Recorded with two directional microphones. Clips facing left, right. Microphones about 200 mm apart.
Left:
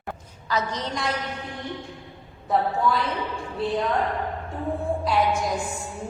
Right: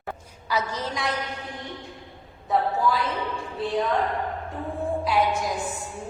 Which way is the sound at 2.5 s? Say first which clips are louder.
Even; centre (ahead or behind).